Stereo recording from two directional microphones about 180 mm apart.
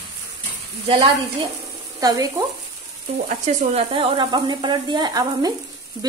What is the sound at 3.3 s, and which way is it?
Speech, 35° right (ahead or behind).